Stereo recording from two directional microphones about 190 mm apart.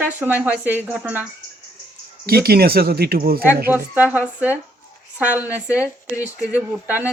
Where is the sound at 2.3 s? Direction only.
55° right (ahead or behind).